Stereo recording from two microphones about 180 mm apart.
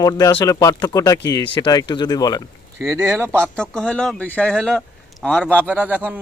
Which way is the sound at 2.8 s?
10° right (ahead or behind).